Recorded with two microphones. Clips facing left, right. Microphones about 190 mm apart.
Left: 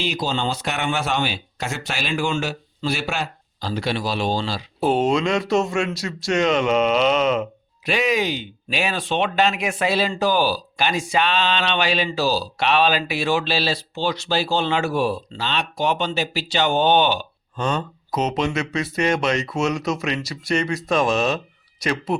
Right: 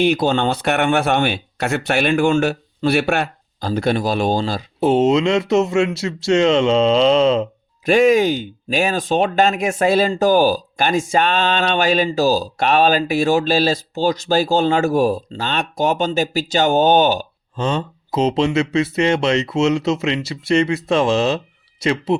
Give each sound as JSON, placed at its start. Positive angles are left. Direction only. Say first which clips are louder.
{"t": 0.0, "sound": "speech", "louder": "right 8 dB", "side_deg": -60}
{"t": 4.8, "sound": "speech", "louder": "right 5 dB", "side_deg": -25}
{"t": 7.9, "sound": "speech", "louder": "right 8 dB", "side_deg": -50}
{"t": 17.6, "sound": "speech", "louder": "right 3 dB", "side_deg": -25}